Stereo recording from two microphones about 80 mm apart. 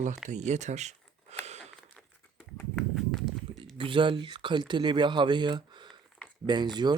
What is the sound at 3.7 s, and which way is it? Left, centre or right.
Speech, right.